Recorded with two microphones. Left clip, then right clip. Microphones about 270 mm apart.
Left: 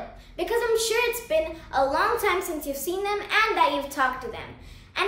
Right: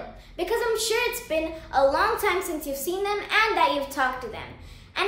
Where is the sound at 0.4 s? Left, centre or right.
Centre.